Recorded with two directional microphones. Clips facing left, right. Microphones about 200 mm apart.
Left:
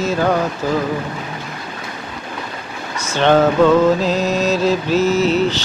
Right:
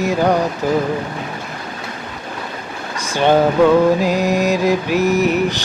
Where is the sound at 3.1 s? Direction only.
10° right (ahead or behind).